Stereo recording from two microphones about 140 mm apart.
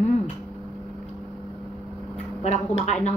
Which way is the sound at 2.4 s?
50° left (ahead or behind).